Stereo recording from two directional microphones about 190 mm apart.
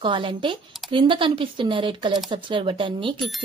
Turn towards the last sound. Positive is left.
turn(degrees=-25)  # may be behind; listen again after turning